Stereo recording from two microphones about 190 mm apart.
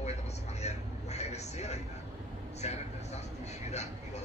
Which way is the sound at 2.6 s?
35° left (ahead or behind).